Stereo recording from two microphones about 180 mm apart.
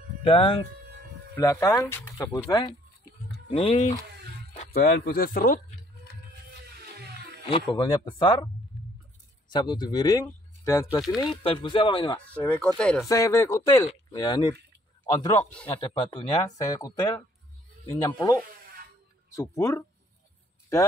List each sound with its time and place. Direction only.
0.2 s speech: 30° left (ahead or behind)
1.3 s speech: 15° left (ahead or behind)
3.4 s speech: 35° left (ahead or behind)
4.7 s speech: 60° left (ahead or behind)
7.4 s speech: 30° left (ahead or behind)
9.5 s speech: 25° left (ahead or behind)
11.1 s speech: 30° left (ahead or behind)
12.7 s speech: 5° left (ahead or behind)
13.1 s speech: 15° left (ahead or behind)
15.7 s speech: 25° left (ahead or behind)